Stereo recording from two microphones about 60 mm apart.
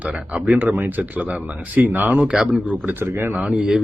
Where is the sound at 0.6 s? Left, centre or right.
Right.